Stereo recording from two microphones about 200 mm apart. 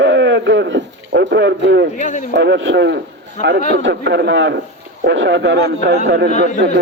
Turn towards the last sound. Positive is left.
turn(degrees=-55)  # may be behind; listen again after turning